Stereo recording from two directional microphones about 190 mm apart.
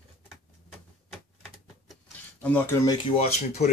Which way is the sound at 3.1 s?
35° left (ahead or behind).